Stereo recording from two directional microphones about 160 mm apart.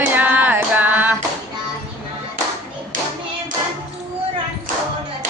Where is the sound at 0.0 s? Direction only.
10° right (ahead or behind).